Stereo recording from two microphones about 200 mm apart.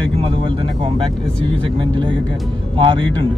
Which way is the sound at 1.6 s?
25° right (ahead or behind).